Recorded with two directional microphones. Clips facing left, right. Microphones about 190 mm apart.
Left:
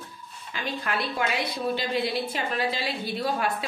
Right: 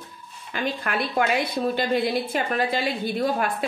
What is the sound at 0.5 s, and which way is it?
A woman's voice, 55° right (ahead or behind).